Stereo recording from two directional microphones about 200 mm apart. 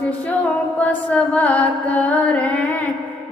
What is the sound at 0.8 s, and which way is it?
Music, 5° left (ahead or behind).